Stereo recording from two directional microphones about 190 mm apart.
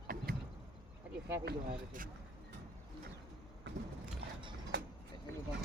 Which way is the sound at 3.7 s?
70° right (ahead or behind).